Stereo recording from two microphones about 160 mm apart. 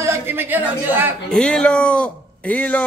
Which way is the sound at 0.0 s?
15° right (ahead or behind).